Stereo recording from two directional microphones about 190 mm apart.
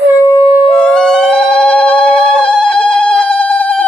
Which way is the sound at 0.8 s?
5° left (ahead or behind).